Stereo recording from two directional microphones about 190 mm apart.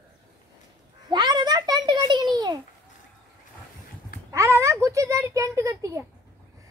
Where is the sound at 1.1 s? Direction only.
20° right (ahead or behind).